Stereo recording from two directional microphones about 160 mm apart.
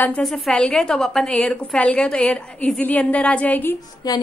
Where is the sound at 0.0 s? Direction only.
5° left (ahead or behind).